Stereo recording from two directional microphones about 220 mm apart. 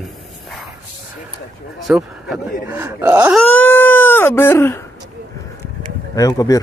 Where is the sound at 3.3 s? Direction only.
5° left (ahead or behind).